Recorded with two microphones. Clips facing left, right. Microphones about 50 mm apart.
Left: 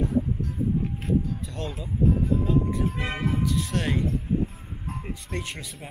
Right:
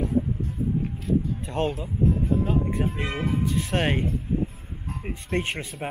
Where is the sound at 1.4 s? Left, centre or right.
Right.